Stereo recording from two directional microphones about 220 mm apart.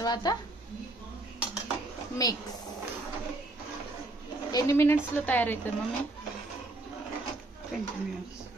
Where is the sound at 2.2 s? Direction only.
15° left (ahead or behind).